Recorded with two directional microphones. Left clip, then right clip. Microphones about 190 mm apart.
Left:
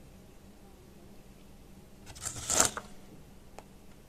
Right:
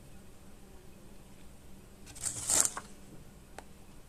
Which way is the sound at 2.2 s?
30° left (ahead or behind).